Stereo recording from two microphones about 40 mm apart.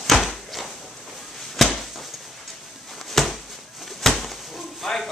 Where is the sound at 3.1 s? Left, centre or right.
Centre.